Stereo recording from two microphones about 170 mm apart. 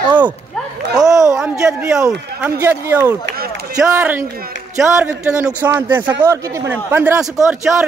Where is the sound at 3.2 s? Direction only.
65° right (ahead or behind).